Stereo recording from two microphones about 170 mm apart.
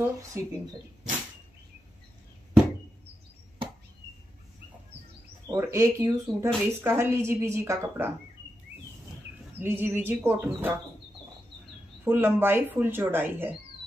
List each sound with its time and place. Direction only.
0.0 s speech: 20° right (ahead or behind)
5.5 s speech: 20° right (ahead or behind)
9.6 s speech: 10° right (ahead or behind)
12.0 s speech: 10° right (ahead or behind)